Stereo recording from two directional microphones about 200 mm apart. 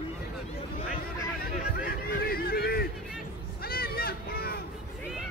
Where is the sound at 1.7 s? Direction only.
50° left (ahead or behind).